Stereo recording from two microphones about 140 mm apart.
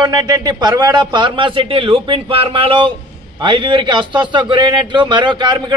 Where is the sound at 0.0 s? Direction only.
30° right (ahead or behind).